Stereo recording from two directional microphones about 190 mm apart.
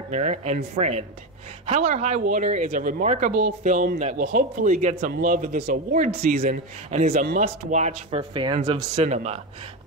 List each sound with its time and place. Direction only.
0.1 s speech: 40° right (ahead or behind)
8.1 s speech: 25° right (ahead or behind)
8.9 s speech: 35° right (ahead or behind)